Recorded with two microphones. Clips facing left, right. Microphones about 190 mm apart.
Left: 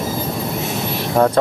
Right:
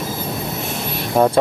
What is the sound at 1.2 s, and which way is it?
Speech, 20° right (ahead or behind).